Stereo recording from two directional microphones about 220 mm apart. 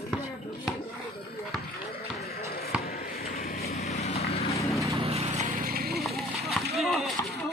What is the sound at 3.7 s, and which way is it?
Vehicle, 30° left (ahead or behind).